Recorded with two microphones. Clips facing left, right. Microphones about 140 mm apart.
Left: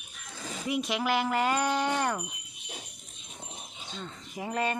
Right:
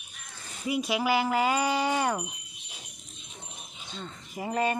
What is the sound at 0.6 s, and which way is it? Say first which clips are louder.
Speech: right 2 dB; 5° right (ahead or behind).